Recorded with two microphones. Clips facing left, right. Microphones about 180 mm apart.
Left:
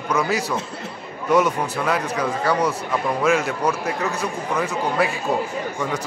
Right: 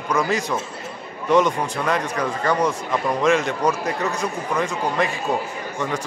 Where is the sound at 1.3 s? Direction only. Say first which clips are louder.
Right 1 dB; 5° left (ahead or behind).